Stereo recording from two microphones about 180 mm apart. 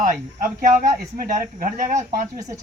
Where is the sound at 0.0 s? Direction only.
45° right (ahead or behind).